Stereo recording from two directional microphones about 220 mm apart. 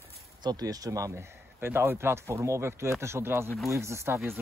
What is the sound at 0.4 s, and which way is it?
Speech, 20° right (ahead or behind).